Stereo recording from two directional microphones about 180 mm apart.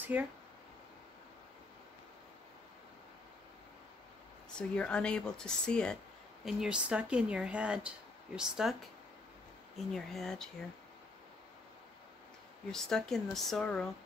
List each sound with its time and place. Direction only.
0.0 s speech: 10° right (ahead or behind)
4.6 s speech: 5° left (ahead or behind)
9.9 s speech: centre (ahead or behind)
12.7 s speech: centre (ahead or behind)